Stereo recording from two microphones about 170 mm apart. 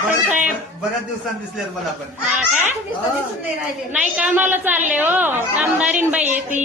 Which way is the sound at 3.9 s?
10° right (ahead or behind).